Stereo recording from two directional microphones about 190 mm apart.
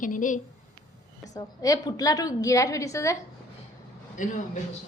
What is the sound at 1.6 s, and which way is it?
A woman's voice, 20° left (ahead or behind).